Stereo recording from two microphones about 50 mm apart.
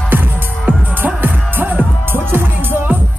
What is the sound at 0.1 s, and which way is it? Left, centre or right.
Music, right.